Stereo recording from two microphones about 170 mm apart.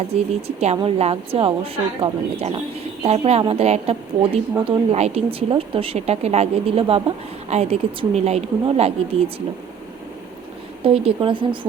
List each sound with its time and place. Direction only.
0.1 s a woman's voice: 35° right (ahead or behind)
10.8 s speech: 35° right (ahead or behind)